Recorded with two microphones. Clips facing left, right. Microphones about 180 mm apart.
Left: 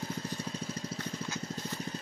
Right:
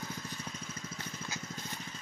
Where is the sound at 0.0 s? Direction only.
30° left (ahead or behind).